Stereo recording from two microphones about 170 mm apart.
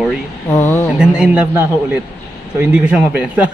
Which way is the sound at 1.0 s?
5° right (ahead or behind).